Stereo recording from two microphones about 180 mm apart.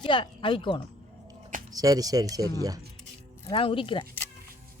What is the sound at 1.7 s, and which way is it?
Speech, 20° right (ahead or behind).